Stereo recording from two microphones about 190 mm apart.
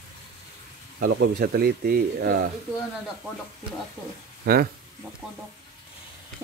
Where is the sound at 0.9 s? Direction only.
50° right (ahead or behind).